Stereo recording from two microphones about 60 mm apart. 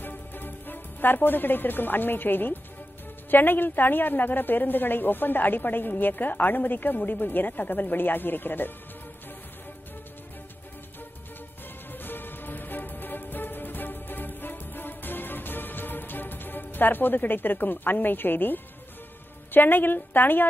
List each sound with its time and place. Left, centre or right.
0.0 s a woman's voice: left
11.9 s music: left
19.5 s a woman's voice: left